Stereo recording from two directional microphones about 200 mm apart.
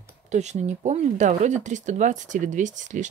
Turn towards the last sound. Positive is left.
turn(degrees=-40)  # may be behind; listen again after turning